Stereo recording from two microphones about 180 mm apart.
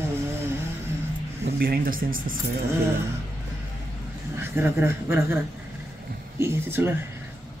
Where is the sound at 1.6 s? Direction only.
55° right (ahead or behind).